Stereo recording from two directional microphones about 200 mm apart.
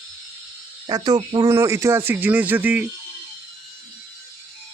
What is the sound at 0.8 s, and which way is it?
Speech, 20° right (ahead or behind).